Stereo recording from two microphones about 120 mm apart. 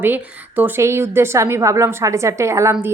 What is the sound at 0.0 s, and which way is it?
A woman's voice, 15° right (ahead or behind).